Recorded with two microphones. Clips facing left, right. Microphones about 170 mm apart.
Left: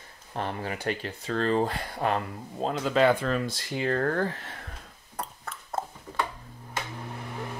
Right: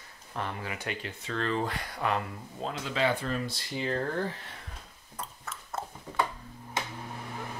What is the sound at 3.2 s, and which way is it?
Speech, 70° left (ahead or behind).